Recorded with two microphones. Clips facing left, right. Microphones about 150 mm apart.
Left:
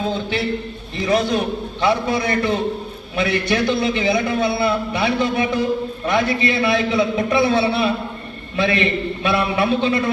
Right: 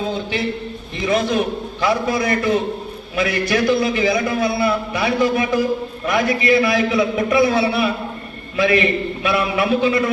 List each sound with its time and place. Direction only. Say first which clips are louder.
1.0 s a man's voice: even; 35° left (ahead or behind)